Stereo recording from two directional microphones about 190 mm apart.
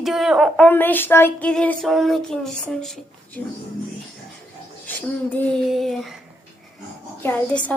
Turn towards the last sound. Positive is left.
turn(degrees=10)  # may be behind; listen again after turning